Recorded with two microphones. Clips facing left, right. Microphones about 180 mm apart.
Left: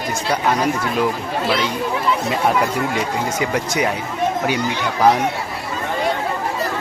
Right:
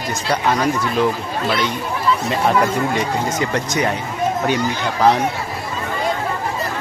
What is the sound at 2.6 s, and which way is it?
Speech, 10° left (ahead or behind).